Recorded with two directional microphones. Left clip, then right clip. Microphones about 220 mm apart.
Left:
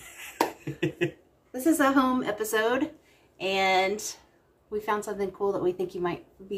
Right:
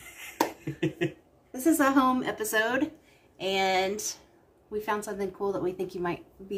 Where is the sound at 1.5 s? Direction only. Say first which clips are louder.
Left 1 dB; 10° right (ahead or behind).